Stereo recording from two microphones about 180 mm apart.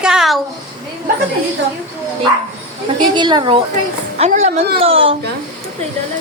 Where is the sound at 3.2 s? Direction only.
25° right (ahead or behind).